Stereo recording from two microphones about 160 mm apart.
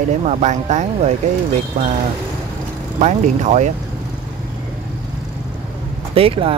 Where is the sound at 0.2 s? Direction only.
50° right (ahead or behind).